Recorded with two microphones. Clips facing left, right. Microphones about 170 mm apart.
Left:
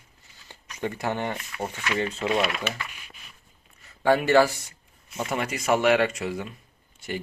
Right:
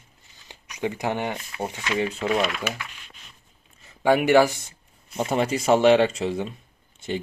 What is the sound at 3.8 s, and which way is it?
Speech, 15° right (ahead or behind).